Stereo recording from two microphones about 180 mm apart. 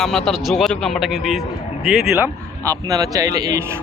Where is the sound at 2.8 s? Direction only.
20° right (ahead or behind).